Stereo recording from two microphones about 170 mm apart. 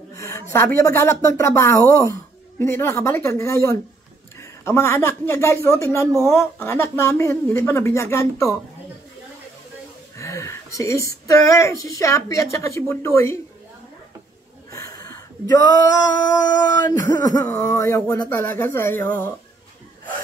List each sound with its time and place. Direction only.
0.1 s speech: 20° left (ahead or behind)
10.1 s speech: 15° left (ahead or behind)
14.7 s a sound: 20° left (ahead or behind)
18.3 s speech: 10° left (ahead or behind)